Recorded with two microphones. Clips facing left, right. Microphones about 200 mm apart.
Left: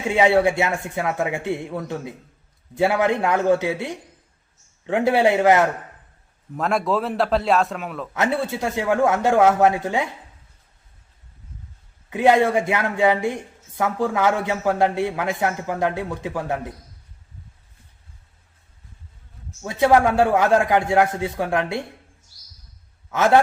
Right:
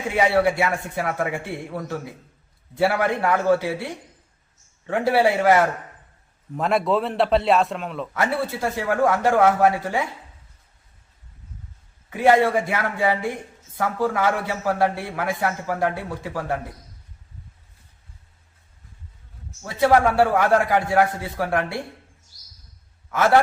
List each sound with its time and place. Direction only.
0.1 s a man's voice: 25° left (ahead or behind)
6.6 s a man's voice: centre (ahead or behind)
8.1 s a man's voice: 20° left (ahead or behind)
12.1 s a man's voice: 20° left (ahead or behind)
19.6 s a man's voice: 20° left (ahead or behind)